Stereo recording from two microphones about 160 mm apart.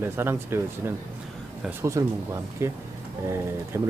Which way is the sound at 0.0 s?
15° right (ahead or behind).